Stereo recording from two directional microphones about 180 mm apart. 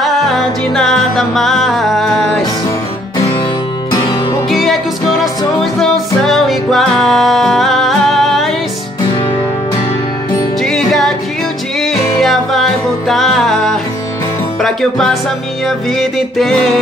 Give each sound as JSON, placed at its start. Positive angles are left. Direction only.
{"t": 0.0, "sound": "music", "side_deg": 0}
{"t": 3.9, "sound": "music", "side_deg": 25}
{"t": 4.5, "sound": "music", "side_deg": 0}
{"t": 10.6, "sound": "music", "side_deg": 0}
{"t": 16.3, "sound": "music", "side_deg": 0}